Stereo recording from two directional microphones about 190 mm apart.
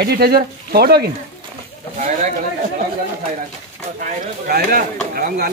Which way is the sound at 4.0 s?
55° right (ahead or behind).